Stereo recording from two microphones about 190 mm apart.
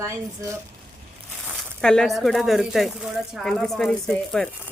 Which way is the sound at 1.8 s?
5° left (ahead or behind).